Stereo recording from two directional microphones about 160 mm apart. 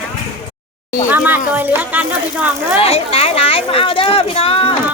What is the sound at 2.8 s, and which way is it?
Speech, 40° left (ahead or behind).